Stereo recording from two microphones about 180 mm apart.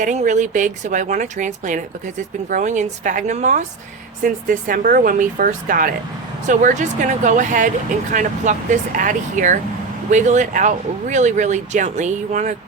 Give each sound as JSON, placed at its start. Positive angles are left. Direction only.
{"t": 0.0, "sound": "speech", "side_deg": -45}